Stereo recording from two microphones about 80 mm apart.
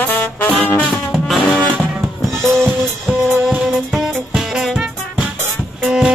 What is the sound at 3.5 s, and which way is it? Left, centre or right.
Music, centre.